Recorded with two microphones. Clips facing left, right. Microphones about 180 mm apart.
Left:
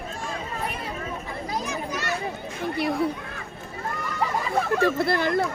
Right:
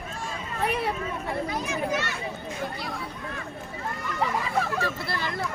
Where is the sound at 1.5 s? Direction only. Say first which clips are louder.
Left 2 dB; 35° left (ahead or behind).